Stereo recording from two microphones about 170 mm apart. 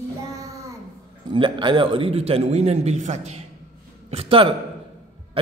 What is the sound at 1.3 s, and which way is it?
A man's voice, 30° right (ahead or behind).